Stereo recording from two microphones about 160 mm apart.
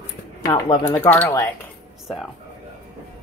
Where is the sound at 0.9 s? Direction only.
15° left (ahead or behind).